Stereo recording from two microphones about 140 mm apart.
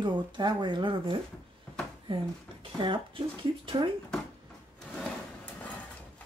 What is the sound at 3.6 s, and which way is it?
Speech, 35° right (ahead or behind).